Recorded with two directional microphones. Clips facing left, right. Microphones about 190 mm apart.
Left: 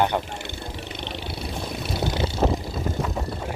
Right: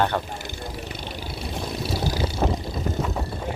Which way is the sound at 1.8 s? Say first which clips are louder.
Left 1 dB; 25° left (ahead or behind).